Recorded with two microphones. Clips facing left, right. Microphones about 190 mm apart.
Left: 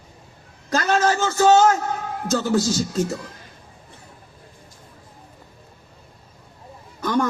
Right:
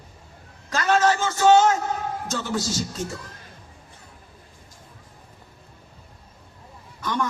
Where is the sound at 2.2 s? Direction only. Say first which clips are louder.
Left 10 dB; 40° left (ahead or behind).